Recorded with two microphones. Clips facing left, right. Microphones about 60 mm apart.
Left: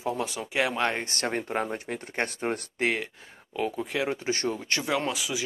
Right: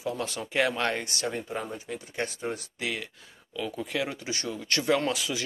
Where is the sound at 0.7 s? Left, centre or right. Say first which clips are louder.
Left 1 dB; left.